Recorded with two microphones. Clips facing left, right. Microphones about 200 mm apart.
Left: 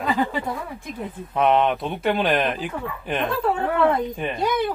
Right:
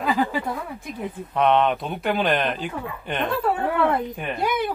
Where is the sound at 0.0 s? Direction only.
5° right (ahead or behind).